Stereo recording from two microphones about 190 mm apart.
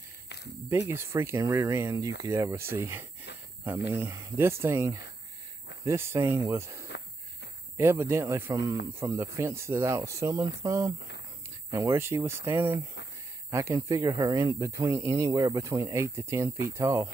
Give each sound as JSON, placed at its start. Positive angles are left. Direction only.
{"t": 0.7, "sound": "speech", "side_deg": -15}